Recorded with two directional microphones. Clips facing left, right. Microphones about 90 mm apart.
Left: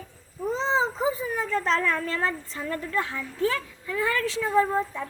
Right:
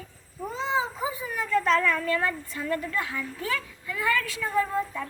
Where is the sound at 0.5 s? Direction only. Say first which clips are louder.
Left 2 dB; 30° left (ahead or behind).